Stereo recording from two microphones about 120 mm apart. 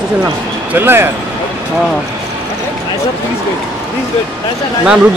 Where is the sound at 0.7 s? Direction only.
20° right (ahead or behind).